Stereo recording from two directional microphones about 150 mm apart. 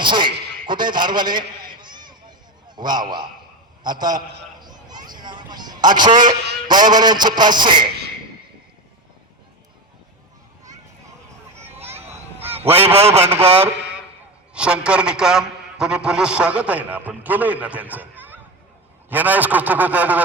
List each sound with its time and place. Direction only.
0.0 s a sound: 30° right (ahead or behind)
2.6 s a man's voice: 30° right (ahead or behind)
12.8 s a man's voice: 40° right (ahead or behind)
14.5 s a man's voice: 5° right (ahead or behind)